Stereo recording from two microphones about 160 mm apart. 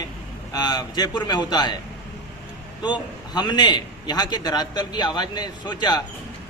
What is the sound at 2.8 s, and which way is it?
A man's voice, 25° left (ahead or behind).